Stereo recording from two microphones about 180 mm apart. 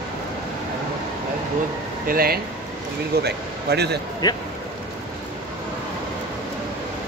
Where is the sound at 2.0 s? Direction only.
55° right (ahead or behind).